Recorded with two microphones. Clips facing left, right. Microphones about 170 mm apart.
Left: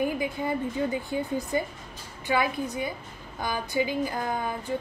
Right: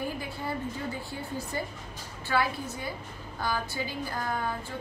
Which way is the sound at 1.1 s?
15° left (ahead or behind).